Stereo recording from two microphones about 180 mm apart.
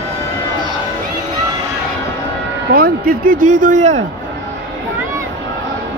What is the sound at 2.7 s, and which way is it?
Speech, 55° right (ahead or behind).